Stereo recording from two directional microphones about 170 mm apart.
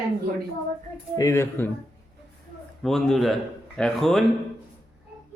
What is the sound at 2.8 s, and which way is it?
Speech, centre (ahead or behind).